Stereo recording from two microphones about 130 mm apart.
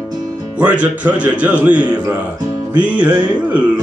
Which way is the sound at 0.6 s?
10° right (ahead or behind).